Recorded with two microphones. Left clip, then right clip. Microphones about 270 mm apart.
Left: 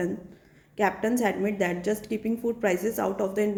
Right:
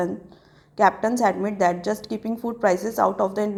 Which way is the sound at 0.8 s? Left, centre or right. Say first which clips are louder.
Right 6 dB; centre.